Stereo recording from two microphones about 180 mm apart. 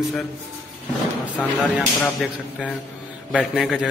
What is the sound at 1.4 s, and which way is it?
Speech, 5° left (ahead or behind).